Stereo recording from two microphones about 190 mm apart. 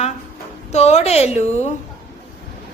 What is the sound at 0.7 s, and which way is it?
Speech, 35° left (ahead or behind).